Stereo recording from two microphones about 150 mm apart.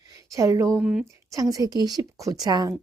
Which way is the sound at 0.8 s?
5° right (ahead or behind).